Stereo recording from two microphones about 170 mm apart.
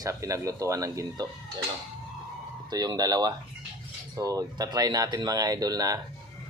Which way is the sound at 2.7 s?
25° right (ahead or behind).